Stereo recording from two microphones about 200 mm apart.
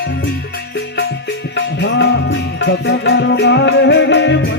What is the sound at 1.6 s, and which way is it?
Music, 65° left (ahead or behind).